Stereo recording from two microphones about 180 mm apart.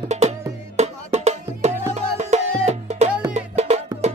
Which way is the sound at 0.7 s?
40° right (ahead or behind).